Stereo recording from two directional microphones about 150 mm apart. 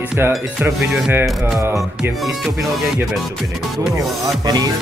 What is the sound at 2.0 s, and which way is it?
Speech, 5° right (ahead or behind).